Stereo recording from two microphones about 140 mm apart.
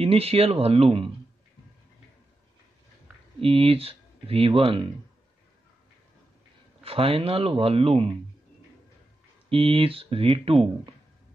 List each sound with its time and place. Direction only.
0.0 s speech: 45° right (ahead or behind)
3.3 s speech: 40° right (ahead or behind)
6.8 s speech: 45° right (ahead or behind)
9.5 s speech: 40° right (ahead or behind)